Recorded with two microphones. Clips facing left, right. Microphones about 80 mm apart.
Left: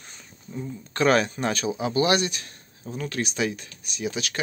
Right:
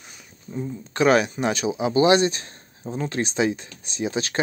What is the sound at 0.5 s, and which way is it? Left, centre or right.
Speech, centre.